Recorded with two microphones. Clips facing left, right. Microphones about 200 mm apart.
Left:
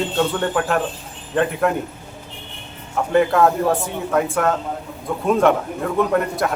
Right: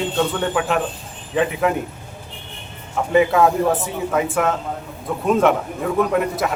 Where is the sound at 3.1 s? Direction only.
5° right (ahead or behind).